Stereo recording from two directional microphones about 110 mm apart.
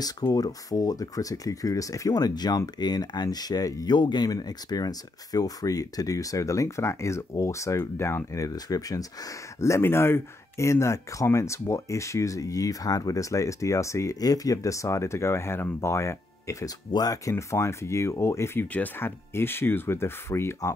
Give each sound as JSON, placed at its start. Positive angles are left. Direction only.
{"t": 0.0, "sound": "speech", "side_deg": 35}